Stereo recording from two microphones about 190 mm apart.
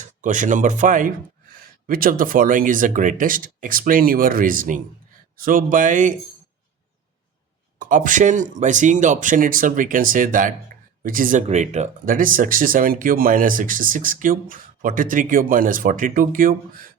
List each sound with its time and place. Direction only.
0.0 s speech: 40° right (ahead or behind)
7.8 s speech: 45° right (ahead or behind)